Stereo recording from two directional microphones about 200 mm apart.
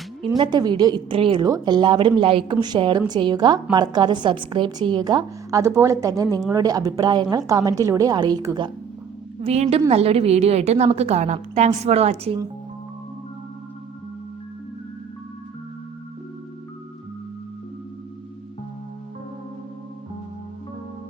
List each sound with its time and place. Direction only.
0.3 s a woman's voice: 20° right (ahead or behind)
9.4 s a woman's voice: 30° right (ahead or behind)